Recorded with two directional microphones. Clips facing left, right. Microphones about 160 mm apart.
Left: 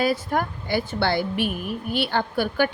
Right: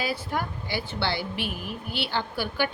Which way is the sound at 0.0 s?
50° left (ahead or behind).